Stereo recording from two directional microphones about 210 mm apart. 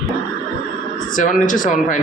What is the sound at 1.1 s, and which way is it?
Speech, 40° left (ahead or behind).